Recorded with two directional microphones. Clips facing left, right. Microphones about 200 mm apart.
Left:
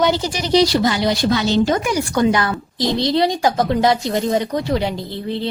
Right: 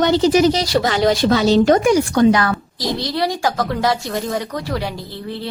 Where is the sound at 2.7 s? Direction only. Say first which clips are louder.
Left 4 dB; 25° left (ahead or behind).